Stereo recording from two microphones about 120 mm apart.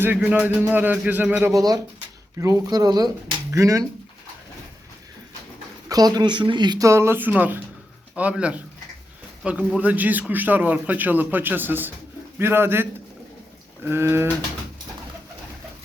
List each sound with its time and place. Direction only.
0.0 s a man's voice: 15° right (ahead or behind)
1.5 s a man's voice: 30° right (ahead or behind)
5.9 s a man's voice: 35° right (ahead or behind)